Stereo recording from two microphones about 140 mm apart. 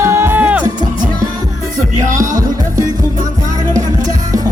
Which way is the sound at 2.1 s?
25° right (ahead or behind).